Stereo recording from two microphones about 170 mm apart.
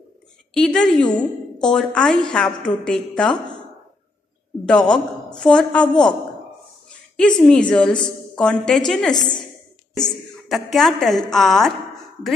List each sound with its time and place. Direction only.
0.6 s a woman's voice: 5° left (ahead or behind)
4.6 s a woman's voice: 5° left (ahead or behind)
7.2 s a woman's voice: 5° left (ahead or behind)
9.1 s a woman's voice: 25° left (ahead or behind)
10.0 s a woman's voice: centre (ahead or behind)